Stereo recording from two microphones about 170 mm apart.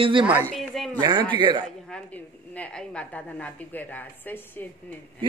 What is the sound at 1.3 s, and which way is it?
Speech, 30° right (ahead or behind).